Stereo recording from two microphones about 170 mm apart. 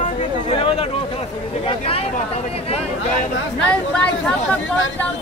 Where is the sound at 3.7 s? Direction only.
5° left (ahead or behind).